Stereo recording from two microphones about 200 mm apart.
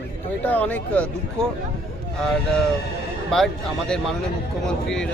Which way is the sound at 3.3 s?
5° left (ahead or behind).